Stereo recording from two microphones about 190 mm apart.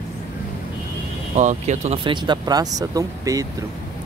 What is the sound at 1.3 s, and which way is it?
Speech, 40° right (ahead or behind).